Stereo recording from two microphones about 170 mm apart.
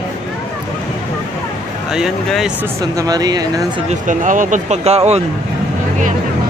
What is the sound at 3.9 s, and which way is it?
Speech, 50° right (ahead or behind).